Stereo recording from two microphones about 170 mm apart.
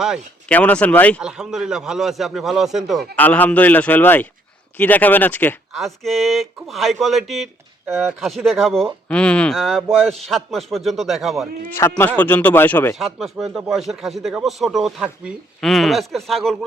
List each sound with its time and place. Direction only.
0.4 s a man's voice: 10° left (ahead or behind)
1.2 s speech: 5° right (ahead or behind)
3.2 s a man's voice: 10° left (ahead or behind)
11.8 s a man's voice: 10° left (ahead or behind)
13.0 s speech: centre (ahead or behind)